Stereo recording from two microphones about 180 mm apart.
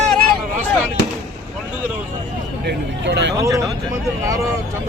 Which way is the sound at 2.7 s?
75° right (ahead or behind).